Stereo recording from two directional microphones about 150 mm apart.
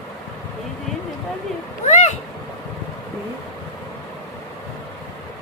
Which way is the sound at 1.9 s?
50° left (ahead or behind).